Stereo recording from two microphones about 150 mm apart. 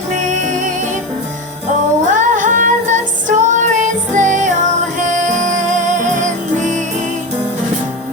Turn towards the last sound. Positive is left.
turn(degrees=-55)  # may be behind; listen again after turning